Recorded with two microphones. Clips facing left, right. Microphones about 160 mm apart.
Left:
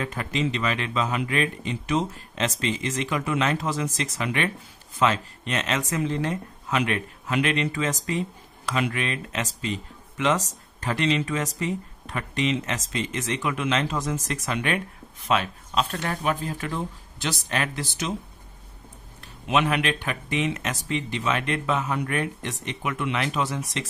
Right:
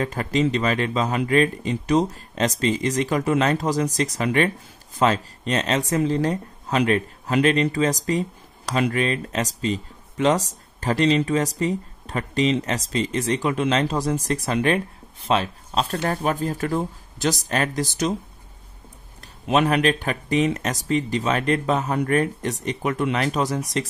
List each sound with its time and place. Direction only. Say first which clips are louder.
0.0 s speech: right 5 dB; 40° right (ahead or behind)
19.4 s speech: right 4 dB; 40° right (ahead or behind)